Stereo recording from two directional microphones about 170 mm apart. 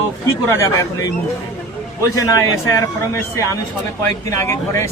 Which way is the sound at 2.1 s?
20° left (ahead or behind).